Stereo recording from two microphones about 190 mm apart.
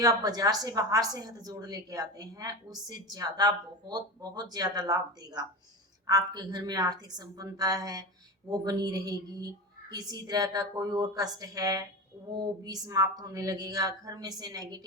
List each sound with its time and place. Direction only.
0.0 s a woman's voice: 20° right (ahead or behind)